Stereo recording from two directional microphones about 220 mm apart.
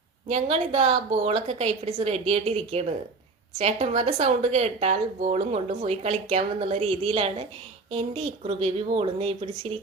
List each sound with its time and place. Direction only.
0.3 s speech: 30° right (ahead or behind)